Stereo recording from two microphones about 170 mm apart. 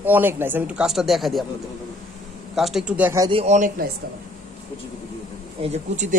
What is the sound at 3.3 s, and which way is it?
Speech, 40° right (ahead or behind).